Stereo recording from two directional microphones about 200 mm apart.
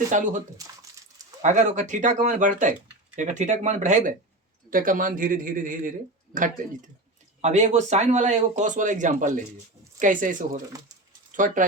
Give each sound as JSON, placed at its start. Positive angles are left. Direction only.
{"t": 0.1, "sound": "a man's voice", "side_deg": -40}